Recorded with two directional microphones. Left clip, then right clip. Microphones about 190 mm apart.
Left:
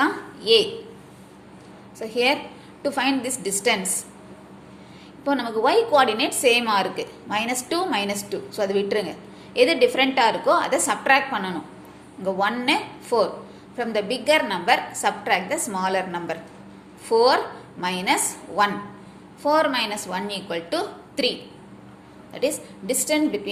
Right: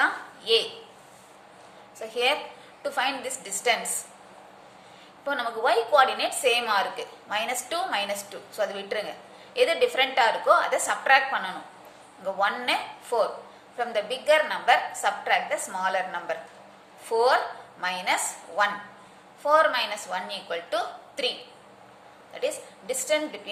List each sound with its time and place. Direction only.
0.0 s a sound: 15° left (ahead or behind)
2.0 s a woman's voice: 10° left (ahead or behind)
5.2 s a woman's voice: 10° left (ahead or behind)